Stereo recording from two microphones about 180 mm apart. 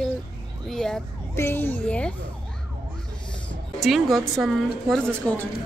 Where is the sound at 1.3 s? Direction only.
10° left (ahead or behind).